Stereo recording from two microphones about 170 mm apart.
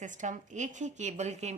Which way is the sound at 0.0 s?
45° right (ahead or behind).